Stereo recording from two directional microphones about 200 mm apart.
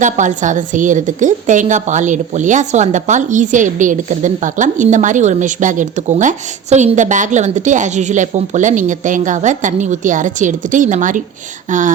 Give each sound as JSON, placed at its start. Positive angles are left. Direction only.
{"t": 0.0, "sound": "a woman's voice", "side_deg": -40}